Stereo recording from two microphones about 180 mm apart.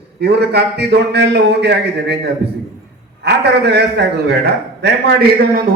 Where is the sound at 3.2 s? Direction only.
70° right (ahead or behind).